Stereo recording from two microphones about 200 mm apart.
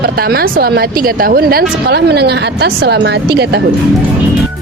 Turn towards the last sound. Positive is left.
turn(degrees=-55)  # may be behind; listen again after turning